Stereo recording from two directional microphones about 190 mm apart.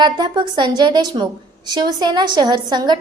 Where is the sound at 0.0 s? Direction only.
25° right (ahead or behind).